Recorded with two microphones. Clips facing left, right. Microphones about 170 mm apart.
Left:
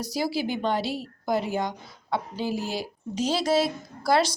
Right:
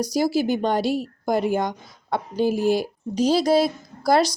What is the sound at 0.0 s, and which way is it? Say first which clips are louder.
A woman's voice: right 6 dB; 45° right (ahead or behind).